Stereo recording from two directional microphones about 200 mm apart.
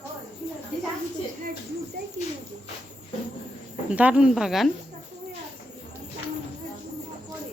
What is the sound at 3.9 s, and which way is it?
Speech, 5° right (ahead or behind).